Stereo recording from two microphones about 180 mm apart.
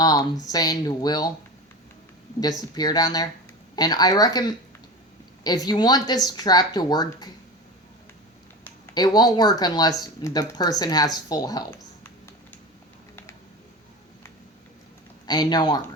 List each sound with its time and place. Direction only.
0.0 s a sound: 20° left (ahead or behind)
0.4 s speech: 20° left (ahead or behind)
2.4 s speech: 20° left (ahead or behind)
9.0 s speech: 20° left (ahead or behind)
15.3 s speech: 20° left (ahead or behind)